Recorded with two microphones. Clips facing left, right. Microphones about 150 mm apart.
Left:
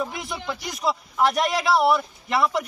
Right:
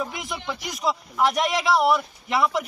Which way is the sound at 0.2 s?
Centre (ahead or behind).